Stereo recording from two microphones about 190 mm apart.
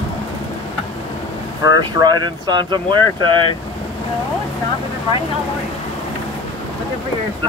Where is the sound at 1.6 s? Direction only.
20° right (ahead or behind).